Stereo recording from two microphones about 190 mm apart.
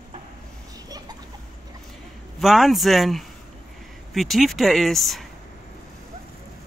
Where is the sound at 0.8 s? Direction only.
20° right (ahead or behind).